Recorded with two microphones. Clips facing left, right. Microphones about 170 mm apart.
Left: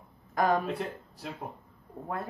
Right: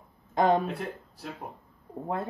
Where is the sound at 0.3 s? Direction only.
25° right (ahead or behind).